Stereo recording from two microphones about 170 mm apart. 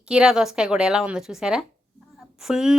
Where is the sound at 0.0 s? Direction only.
5° right (ahead or behind).